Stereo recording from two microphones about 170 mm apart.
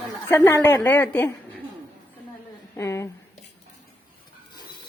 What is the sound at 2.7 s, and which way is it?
Speech, 15° left (ahead or behind).